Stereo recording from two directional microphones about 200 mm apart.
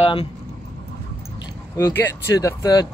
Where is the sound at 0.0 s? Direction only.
25° left (ahead or behind).